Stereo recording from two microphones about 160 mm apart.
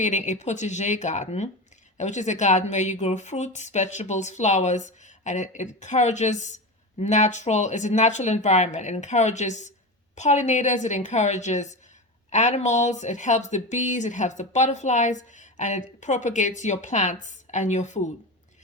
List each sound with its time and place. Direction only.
0.0 s speech: 50° left (ahead or behind)